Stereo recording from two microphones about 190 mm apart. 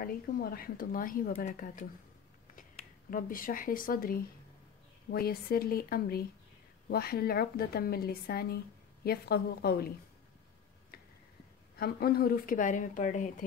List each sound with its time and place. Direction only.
0.0 s a woman's voice: 50° left (ahead or behind)
10.9 s tick-tock: 50° left (ahead or behind)
11.8 s speech: 55° left (ahead or behind)